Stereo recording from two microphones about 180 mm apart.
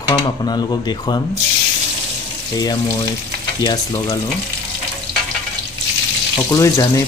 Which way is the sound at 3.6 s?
25° left (ahead or behind).